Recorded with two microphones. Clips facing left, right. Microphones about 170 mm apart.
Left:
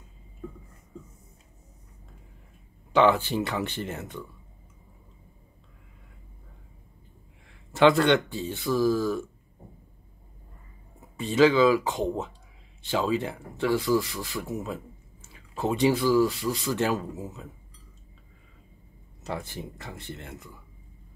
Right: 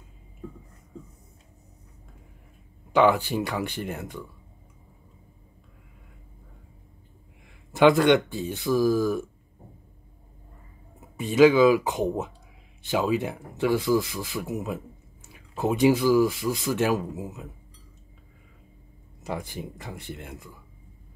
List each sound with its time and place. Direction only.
2.9 s speech: 10° right (ahead or behind)
7.4 s speech: 15° right (ahead or behind)
11.1 s speech: 15° right (ahead or behind)
19.2 s speech: 15° right (ahead or behind)